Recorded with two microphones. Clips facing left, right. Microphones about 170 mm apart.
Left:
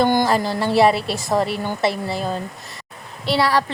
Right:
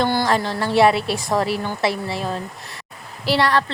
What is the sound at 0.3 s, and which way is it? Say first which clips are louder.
A woman's voice: left 1 dB; centre (ahead or behind).